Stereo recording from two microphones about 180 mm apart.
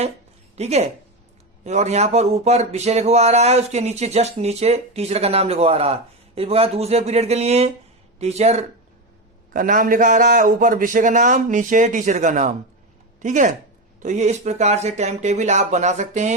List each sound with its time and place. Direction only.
0.5 s speech: 35° right (ahead or behind)
9.5 s a man's voice: 50° right (ahead or behind)